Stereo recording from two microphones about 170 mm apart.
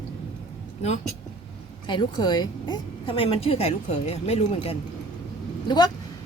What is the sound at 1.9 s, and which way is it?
A woman's voice, 25° left (ahead or behind).